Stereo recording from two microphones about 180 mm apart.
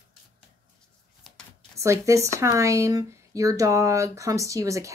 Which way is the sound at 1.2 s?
Centre (ahead or behind).